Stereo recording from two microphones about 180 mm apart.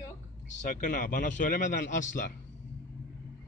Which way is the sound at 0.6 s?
45° left (ahead or behind).